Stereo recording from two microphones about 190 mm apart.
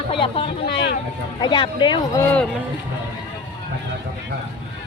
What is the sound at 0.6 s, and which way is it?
Speech, 60° left (ahead or behind).